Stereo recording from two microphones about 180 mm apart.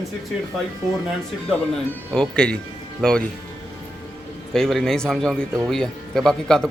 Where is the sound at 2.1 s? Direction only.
5° left (ahead or behind).